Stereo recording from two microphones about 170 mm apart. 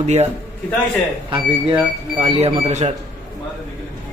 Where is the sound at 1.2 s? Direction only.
30° right (ahead or behind).